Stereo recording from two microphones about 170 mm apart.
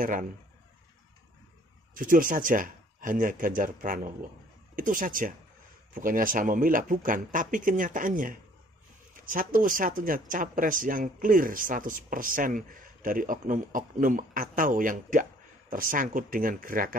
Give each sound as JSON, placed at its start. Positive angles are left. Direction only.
{"t": 0.0, "sound": "speech", "side_deg": -50}
{"t": 2.0, "sound": "speech", "side_deg": -50}